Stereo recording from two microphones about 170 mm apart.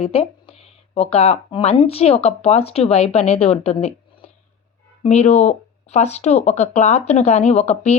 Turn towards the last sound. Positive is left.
turn(degrees=40)  # may be behind; listen again after turning